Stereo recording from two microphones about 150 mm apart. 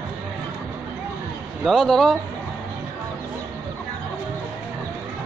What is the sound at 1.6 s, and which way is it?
Speech, centre (ahead or behind).